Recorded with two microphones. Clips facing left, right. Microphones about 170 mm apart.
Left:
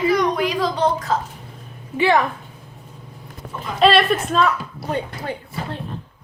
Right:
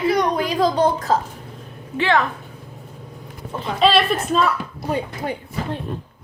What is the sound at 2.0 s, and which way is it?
Speech, 10° left (ahead or behind).